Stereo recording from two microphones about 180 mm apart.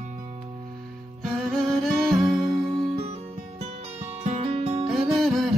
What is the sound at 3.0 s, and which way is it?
Music, 35° right (ahead or behind).